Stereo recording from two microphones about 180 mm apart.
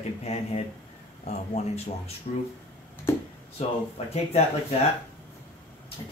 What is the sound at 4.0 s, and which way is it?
Speech, 35° left (ahead or behind).